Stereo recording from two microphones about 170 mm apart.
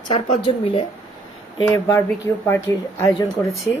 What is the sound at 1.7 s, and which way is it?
Speech, 15° left (ahead or behind).